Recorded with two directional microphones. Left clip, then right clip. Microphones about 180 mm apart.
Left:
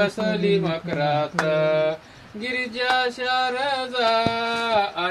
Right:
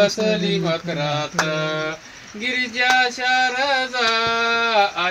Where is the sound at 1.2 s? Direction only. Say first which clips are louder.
Left 1 dB; 50° right (ahead or behind).